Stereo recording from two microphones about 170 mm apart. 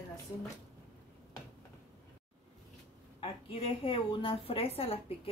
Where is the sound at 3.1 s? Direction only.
35° left (ahead or behind).